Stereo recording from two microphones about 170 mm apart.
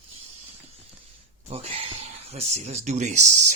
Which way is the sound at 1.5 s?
35° right (ahead or behind).